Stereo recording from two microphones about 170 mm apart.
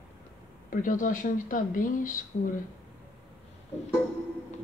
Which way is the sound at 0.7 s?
50° left (ahead or behind).